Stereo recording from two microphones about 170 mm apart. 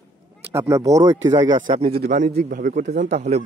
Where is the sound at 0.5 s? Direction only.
15° right (ahead or behind).